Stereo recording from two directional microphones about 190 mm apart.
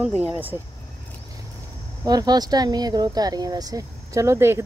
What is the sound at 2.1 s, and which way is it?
Speech, 20° right (ahead or behind).